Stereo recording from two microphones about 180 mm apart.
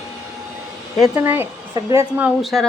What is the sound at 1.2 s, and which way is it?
Speech, 10° right (ahead or behind).